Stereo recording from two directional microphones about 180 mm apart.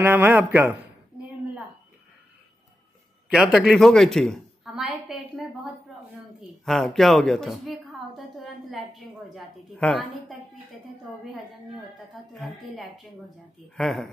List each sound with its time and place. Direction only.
0.0 s a man's voice: 10° right (ahead or behind)
3.3 s a woman's voice: 5° right (ahead or behind)
12.1 s speech: centre (ahead or behind)